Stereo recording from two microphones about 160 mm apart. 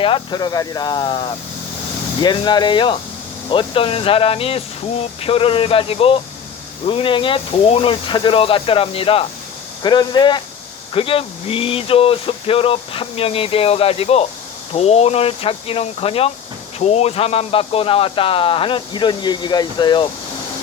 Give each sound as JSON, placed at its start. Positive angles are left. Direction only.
{"t": 0.0, "sound": "speech", "side_deg": 30}